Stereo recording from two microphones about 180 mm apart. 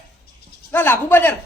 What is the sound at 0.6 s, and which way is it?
Speech, 10° left (ahead or behind).